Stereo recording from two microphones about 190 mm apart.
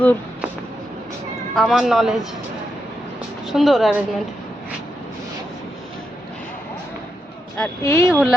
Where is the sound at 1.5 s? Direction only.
Centre (ahead or behind).